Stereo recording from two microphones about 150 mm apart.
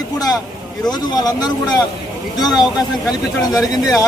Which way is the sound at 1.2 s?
25° left (ahead or behind).